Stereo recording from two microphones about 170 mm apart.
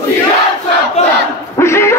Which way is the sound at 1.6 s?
15° left (ahead or behind).